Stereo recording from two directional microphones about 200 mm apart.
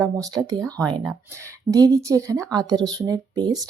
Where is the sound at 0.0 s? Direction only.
20° right (ahead or behind).